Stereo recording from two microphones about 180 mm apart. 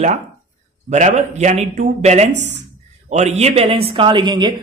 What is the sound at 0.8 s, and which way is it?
Speech, 40° right (ahead or behind).